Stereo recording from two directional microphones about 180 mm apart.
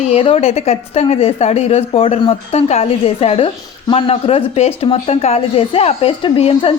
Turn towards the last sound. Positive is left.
turn(degrees=30)  # may be behind; listen again after turning